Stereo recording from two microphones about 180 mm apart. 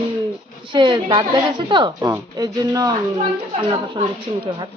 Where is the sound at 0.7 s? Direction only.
25° right (ahead or behind).